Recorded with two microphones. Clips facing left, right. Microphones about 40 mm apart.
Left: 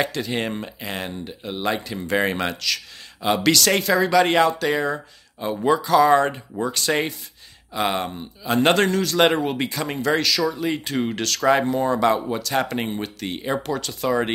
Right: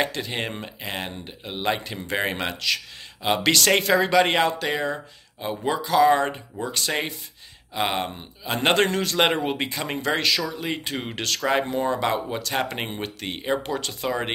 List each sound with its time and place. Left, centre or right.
0.0 s speech: centre
2.0 s speech: centre
3.5 s speech: right
8.7 s speech: right
9.1 s speech: centre
10.6 s speech: centre
12.6 s speech: right
14.0 s speech: centre